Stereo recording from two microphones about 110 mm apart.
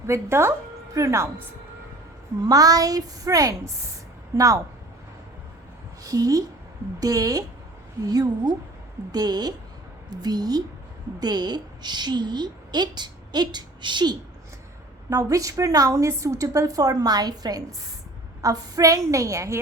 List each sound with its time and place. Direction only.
0.1 s a woman's voice: 25° right (ahead or behind)
2.4 s a woman's voice: 35° right (ahead or behind)
6.0 s a woman's voice: 30° right (ahead or behind)
15.1 s a woman's voice: 30° right (ahead or behind)